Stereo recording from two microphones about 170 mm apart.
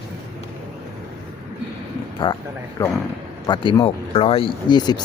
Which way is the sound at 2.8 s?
15° left (ahead or behind).